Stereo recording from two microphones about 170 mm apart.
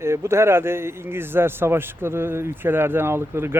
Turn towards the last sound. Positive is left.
turn(degrees=-15)  # may be behind; listen again after turning